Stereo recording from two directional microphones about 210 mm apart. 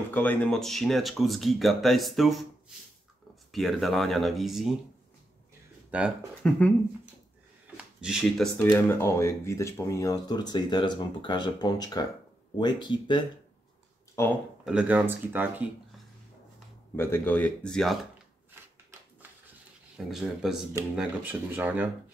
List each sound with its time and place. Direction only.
0.1 s speech: 10° left (ahead or behind)
3.5 s speech: centre (ahead or behind)
5.9 s speech: 5° right (ahead or behind)
7.7 s a sound: 5° right (ahead or behind)
8.7 s speech: 10° left (ahead or behind)
14.6 s speech: 5° right (ahead or behind)
16.9 s speech: 10° left (ahead or behind)
20.1 s speech: centre (ahead or behind)